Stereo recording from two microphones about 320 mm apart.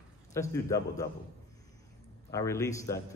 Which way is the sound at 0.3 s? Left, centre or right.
Centre.